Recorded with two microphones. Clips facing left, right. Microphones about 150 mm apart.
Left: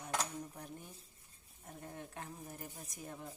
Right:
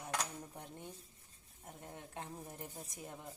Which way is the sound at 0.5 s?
25° right (ahead or behind).